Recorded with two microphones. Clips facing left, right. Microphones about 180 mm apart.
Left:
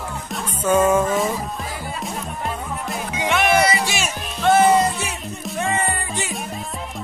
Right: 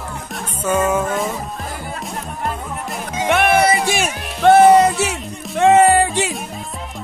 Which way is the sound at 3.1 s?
55° right (ahead or behind).